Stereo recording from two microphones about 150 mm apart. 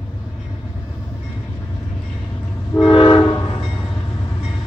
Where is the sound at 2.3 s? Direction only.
15° left (ahead or behind).